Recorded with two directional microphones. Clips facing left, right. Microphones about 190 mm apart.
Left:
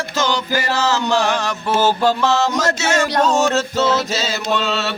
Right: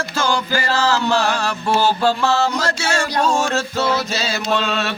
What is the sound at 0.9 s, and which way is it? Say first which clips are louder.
Speech: left 1 dB; 20° left (ahead or behind).